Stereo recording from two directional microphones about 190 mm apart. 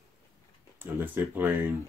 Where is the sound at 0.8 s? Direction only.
10° right (ahead or behind).